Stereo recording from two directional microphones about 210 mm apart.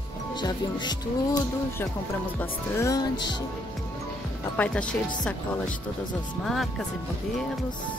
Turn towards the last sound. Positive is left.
turn(degrees=0)  # may be behind; listen again after turning